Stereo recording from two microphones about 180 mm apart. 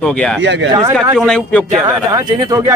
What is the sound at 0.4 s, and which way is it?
Speech, 85° right.